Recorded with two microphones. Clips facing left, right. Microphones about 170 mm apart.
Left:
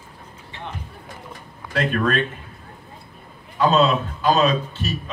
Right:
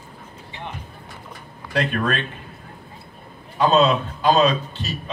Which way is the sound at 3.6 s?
20° right (ahead or behind).